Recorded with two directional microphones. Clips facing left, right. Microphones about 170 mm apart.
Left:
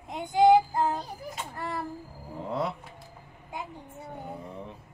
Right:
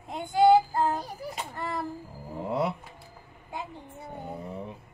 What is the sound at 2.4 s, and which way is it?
Speech, 10° right (ahead or behind).